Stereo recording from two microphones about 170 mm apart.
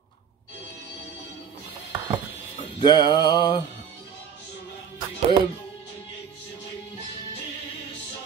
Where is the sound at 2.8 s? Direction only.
25° left (ahead or behind).